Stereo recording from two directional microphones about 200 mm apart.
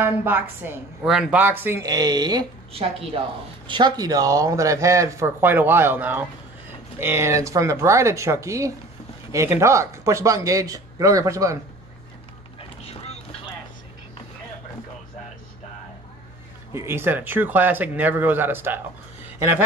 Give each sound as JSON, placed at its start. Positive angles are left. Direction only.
{"t": 0.0, "sound": "speech", "side_deg": -10}
{"t": 12.5, "sound": "vehicle", "side_deg": 30}
{"t": 16.7, "sound": "speech", "side_deg": -10}